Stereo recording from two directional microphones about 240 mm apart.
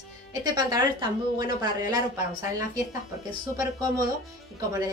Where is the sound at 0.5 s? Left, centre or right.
Centre.